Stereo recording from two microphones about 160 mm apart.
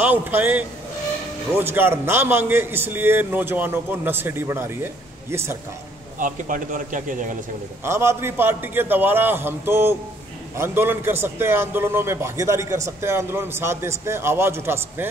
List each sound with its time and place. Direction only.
0.0 s a man's voice: 10° right (ahead or behind)
6.1 s a man's voice: 55° right (ahead or behind)
7.8 s a man's voice: 15° right (ahead or behind)